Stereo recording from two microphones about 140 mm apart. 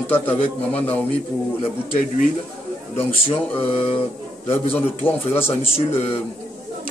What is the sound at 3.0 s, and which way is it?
Speech, 40° left (ahead or behind).